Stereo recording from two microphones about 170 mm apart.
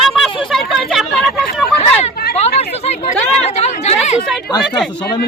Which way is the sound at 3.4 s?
40° left (ahead or behind).